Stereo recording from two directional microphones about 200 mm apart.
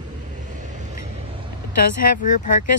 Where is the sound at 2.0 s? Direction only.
45° left (ahead or behind).